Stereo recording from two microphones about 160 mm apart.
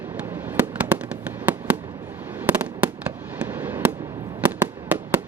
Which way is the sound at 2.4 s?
10° right (ahead or behind).